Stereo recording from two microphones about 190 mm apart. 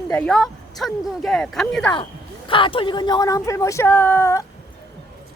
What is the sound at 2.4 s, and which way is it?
A woman's voice, 25° left (ahead or behind).